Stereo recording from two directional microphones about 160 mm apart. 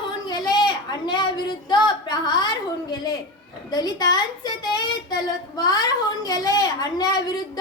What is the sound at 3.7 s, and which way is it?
A woman's voice, 25° left (ahead or behind).